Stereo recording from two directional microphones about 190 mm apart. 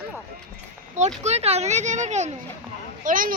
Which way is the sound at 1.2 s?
35° right (ahead or behind).